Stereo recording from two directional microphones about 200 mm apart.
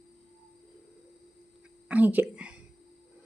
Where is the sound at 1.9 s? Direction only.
10° right (ahead or behind).